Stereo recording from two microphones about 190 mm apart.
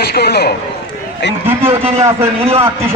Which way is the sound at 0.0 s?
55° left (ahead or behind).